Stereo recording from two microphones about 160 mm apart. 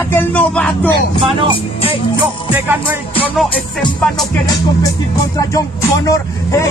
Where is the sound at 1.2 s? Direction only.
35° right (ahead or behind).